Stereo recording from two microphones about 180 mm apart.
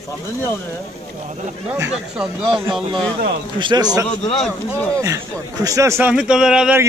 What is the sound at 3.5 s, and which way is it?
Speech, 25° right (ahead or behind).